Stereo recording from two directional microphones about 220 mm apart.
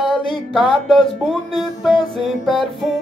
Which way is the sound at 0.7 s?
Centre (ahead or behind).